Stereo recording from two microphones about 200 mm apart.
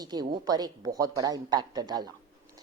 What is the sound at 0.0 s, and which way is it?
A woman's voice, 20° right (ahead or behind).